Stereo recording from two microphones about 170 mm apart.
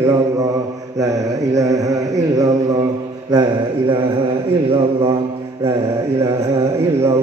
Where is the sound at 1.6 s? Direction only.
20° right (ahead or behind).